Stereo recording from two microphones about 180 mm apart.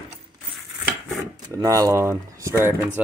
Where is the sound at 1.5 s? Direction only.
20° right (ahead or behind).